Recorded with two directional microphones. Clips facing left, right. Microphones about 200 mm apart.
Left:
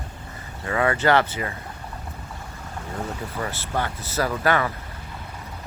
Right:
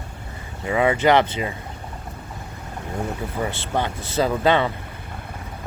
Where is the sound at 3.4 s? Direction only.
20° right (ahead or behind).